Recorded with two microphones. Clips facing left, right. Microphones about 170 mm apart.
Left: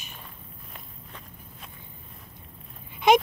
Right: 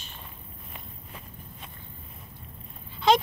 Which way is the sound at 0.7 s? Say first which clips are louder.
Right 1 dB; centre (ahead or behind).